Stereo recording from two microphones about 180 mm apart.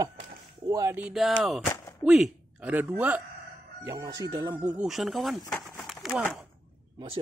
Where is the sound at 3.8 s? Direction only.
20° right (ahead or behind).